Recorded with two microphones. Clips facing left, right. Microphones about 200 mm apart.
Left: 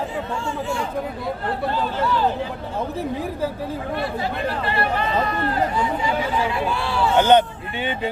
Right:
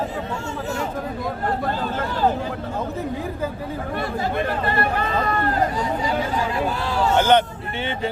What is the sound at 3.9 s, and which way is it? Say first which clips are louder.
Speech: right 4 dB; 45° right (ahead or behind).